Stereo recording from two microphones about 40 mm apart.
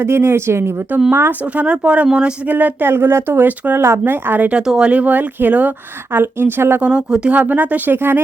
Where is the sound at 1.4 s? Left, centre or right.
Right.